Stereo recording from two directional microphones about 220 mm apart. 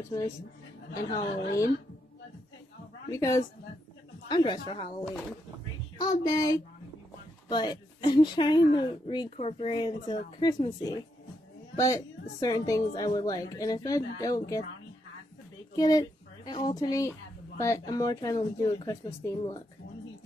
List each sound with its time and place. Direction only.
1.1 s speech: 15° left (ahead or behind)
3.1 s a woman's voice: 15° left (ahead or behind)
5.9 s a woman's voice: 15° left (ahead or behind)
15.7 s a sound: 15° left (ahead or behind)
16.6 s speech: 20° left (ahead or behind)